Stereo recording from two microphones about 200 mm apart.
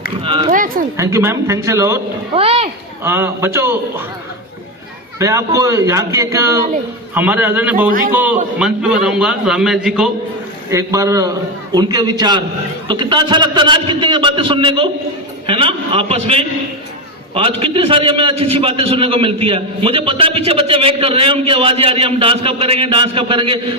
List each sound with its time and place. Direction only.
0.2 s a man's voice: 25° right (ahead or behind)
0.5 s speech: 40° right (ahead or behind)
0.9 s speech: 15° right (ahead or behind)
2.3 s a man's voice: 30° right (ahead or behind)
3.0 s speech: 10° right (ahead or behind)
5.2 s speech: 15° right (ahead or behind)
7.9 s a man's voice: 45° right (ahead or behind)
8.1 s a man's voice: 10° right (ahead or behind)
10.7 s a man's voice: 15° right (ahead or behind)